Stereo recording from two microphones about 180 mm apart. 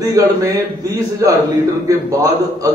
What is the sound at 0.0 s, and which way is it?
A man's voice, 20° right (ahead or behind).